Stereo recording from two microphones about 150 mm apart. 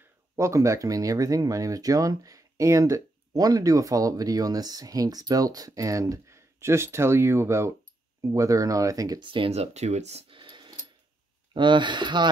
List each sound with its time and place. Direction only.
0.4 s speech: 20° right (ahead or behind)